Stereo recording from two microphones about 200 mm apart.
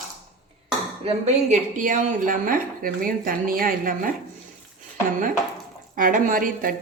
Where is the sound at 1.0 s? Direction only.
35° right (ahead or behind).